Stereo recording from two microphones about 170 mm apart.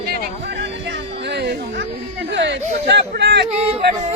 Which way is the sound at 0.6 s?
85° right.